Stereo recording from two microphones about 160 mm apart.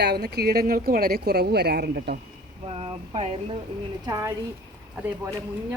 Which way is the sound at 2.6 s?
40° right (ahead or behind).